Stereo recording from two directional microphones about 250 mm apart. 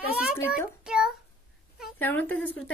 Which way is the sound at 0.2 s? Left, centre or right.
Centre.